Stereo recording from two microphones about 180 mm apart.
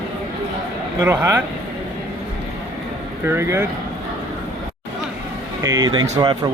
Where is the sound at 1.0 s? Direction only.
15° right (ahead or behind).